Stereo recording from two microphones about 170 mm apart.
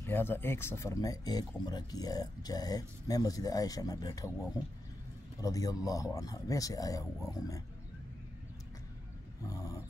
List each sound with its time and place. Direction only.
0.0 s speech: 10° left (ahead or behind)